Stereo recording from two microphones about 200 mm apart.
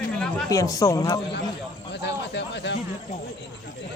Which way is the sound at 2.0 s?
60° left (ahead or behind).